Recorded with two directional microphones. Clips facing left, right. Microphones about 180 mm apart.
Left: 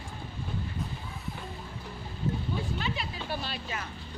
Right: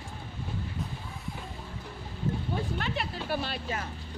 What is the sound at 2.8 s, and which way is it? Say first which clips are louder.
Music: right 1 dB; 55° right (ahead or behind).